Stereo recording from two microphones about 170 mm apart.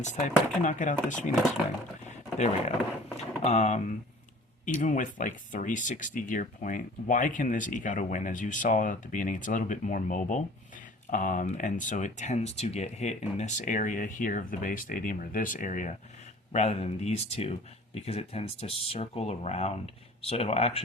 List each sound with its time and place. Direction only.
0.0 s speech: 45° left (ahead or behind)
2.0 s a sound: 45° left (ahead or behind)
3.4 s speech: 40° left (ahead or behind)